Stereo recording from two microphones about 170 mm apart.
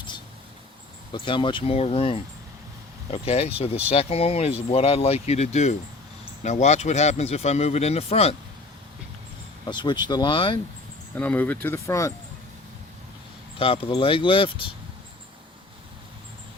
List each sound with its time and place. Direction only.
1.1 s speech: 30° left (ahead or behind)
9.6 s speech: 25° left (ahead or behind)
11.1 s speech: 10° left (ahead or behind)
13.6 s speech: 30° left (ahead or behind)